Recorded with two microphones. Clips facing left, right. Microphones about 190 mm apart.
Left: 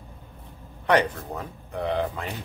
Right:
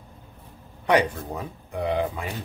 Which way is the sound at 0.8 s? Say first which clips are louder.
Right 1 dB; 10° right (ahead or behind).